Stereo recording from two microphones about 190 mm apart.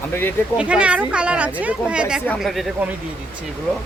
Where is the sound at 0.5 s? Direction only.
5° right (ahead or behind).